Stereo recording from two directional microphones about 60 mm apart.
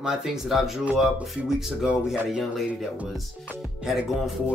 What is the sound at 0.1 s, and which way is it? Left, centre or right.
Speech, centre.